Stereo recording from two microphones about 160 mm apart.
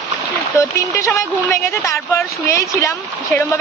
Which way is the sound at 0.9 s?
20° left (ahead or behind).